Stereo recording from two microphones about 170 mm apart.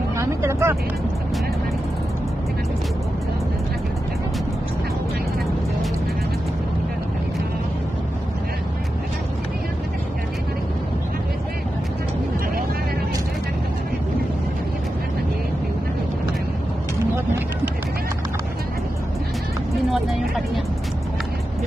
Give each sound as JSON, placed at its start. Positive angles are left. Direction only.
{"t": 0.2, "sound": "vehicle", "side_deg": -15}
{"t": 19.9, "sound": "vehicle", "side_deg": 0}